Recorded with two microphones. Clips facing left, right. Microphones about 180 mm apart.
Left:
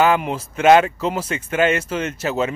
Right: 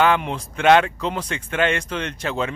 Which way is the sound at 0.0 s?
5° left (ahead or behind).